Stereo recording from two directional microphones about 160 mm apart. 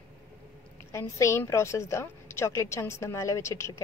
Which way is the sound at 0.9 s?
15° left (ahead or behind).